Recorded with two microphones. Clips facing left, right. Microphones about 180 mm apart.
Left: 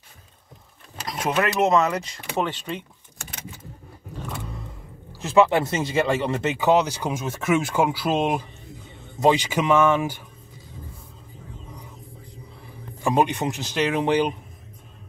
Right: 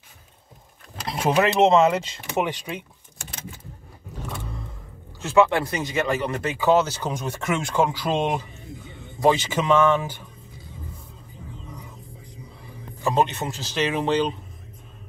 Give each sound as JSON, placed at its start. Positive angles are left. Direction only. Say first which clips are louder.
{"t": 1.4, "sound": "speech", "louder": "right 3 dB", "side_deg": -25}
{"t": 2.4, "sound": "speech", "louder": "even", "side_deg": -10}
{"t": 5.2, "sound": "speech", "louder": "left 1 dB", "side_deg": 15}
{"t": 13.0, "sound": "speech", "louder": "left 1 dB", "side_deg": 15}